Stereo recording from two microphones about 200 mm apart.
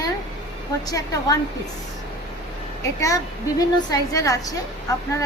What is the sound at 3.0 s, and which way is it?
A woman's voice, 15° left (ahead or behind).